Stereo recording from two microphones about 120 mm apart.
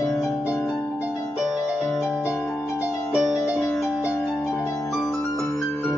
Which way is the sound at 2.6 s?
10° right (ahead or behind).